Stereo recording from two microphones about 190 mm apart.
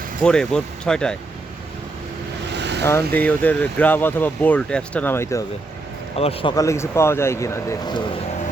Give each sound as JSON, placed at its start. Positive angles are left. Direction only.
{"t": 0.2, "sound": "speech", "side_deg": 5}
{"t": 2.5, "sound": "vehicle", "side_deg": -65}
{"t": 2.8, "sound": "speech", "side_deg": 10}
{"t": 6.1, "sound": "speech", "side_deg": 30}
{"t": 6.6, "sound": "speech", "side_deg": 15}